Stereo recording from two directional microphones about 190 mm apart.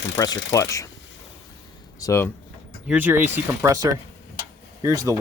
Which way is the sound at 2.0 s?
15° left (ahead or behind).